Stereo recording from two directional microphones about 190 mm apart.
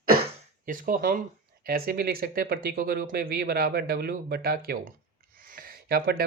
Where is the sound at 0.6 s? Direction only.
45° right (ahead or behind).